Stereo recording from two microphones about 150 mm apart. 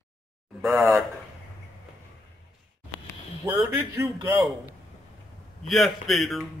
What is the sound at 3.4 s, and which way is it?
Speech, 15° right (ahead or behind).